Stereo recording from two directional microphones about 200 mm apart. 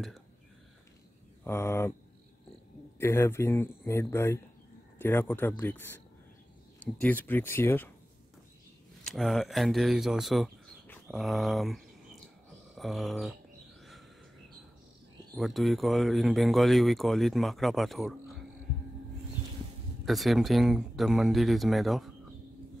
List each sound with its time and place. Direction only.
1.4 s speech: 10° left (ahead or behind)
3.0 s speech: 10° left (ahead or behind)
9.0 s speech: centre (ahead or behind)
15.3 s speech: centre (ahead or behind)
20.1 s speech: centre (ahead or behind)